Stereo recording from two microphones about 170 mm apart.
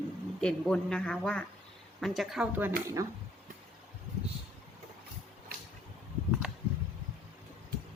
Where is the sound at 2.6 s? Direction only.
15° right (ahead or behind).